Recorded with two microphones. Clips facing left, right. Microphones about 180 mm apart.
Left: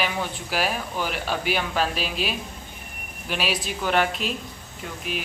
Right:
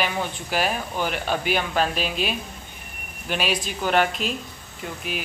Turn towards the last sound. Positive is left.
turn(degrees=0)  # may be behind; listen again after turning